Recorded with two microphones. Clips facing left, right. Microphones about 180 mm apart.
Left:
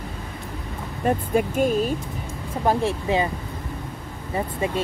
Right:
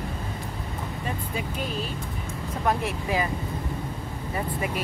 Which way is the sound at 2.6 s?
30° left (ahead or behind).